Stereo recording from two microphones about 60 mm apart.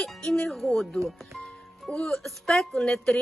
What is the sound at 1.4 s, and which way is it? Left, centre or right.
Music, centre.